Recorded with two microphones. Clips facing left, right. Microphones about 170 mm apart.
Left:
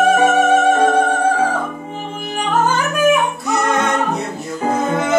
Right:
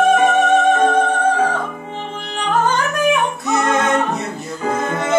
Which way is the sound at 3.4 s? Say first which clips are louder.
Even; centre (ahead or behind).